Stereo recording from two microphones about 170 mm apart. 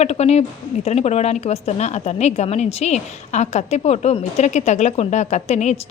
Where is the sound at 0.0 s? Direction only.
40° left (ahead or behind).